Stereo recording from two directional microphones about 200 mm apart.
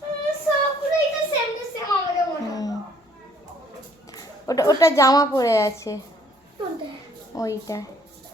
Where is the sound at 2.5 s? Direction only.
20° left (ahead or behind).